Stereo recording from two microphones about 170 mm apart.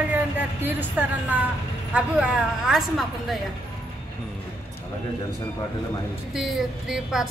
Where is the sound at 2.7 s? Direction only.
Centre (ahead or behind).